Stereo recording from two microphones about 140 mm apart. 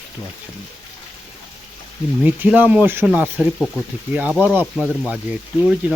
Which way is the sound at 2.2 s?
10° right (ahead or behind).